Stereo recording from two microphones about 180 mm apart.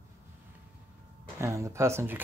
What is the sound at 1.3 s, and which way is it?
Speech, 15° right (ahead or behind).